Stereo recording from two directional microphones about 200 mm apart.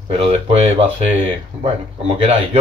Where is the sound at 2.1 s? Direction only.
30° right (ahead or behind).